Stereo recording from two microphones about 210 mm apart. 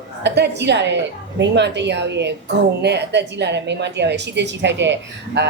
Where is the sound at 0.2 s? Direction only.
55° right (ahead or behind).